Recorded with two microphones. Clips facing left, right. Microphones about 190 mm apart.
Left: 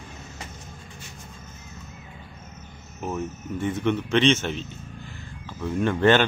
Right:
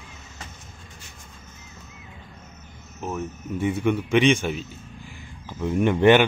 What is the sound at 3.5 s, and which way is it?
Speech, 10° right (ahead or behind).